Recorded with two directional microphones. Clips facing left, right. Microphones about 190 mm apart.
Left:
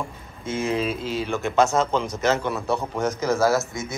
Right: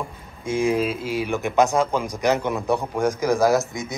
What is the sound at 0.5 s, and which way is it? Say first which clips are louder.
Speech: right 3 dB; 10° right (ahead or behind).